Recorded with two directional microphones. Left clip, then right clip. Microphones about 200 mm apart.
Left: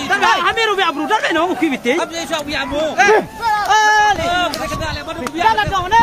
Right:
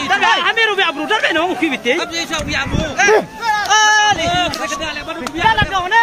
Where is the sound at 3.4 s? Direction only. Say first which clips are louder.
Even; 55° left (ahead or behind).